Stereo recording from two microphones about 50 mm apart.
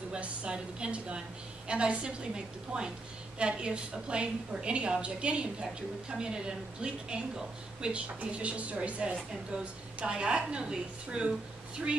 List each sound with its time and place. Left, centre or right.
0.1 s a woman's voice: right